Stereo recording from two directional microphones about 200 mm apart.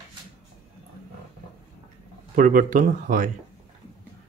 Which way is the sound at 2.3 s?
40° right (ahead or behind).